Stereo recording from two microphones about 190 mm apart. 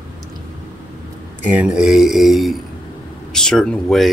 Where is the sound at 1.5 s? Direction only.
5° right (ahead or behind).